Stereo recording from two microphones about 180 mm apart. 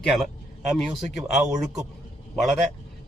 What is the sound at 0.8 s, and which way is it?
Speech, centre (ahead or behind).